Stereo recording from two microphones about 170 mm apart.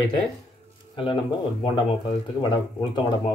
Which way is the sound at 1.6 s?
25° left (ahead or behind).